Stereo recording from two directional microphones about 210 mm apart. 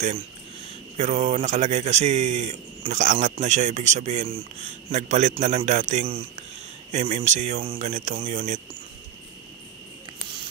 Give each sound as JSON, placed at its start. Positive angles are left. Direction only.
{"t": 0.9, "sound": "a man's voice", "side_deg": -30}